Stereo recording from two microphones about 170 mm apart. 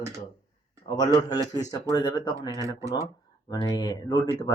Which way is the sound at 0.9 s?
25° left (ahead or behind).